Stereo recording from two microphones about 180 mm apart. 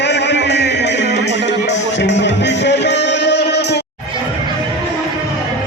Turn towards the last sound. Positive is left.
turn(degrees=70)  # may be behind; listen again after turning